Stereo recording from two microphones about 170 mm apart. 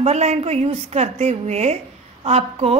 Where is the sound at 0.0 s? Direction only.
40° right (ahead or behind).